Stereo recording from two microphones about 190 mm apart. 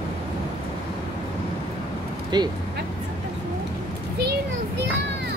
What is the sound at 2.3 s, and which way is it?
Speech, 20° right (ahead or behind).